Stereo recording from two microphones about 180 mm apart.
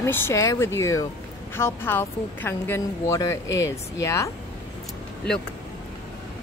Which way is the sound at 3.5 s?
85° left.